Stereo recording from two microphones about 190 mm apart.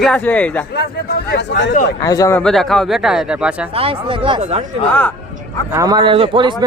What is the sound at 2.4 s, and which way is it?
Speech, centre (ahead or behind).